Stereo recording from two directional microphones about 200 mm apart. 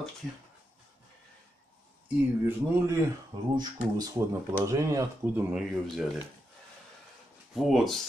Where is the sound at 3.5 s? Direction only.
20° right (ahead or behind).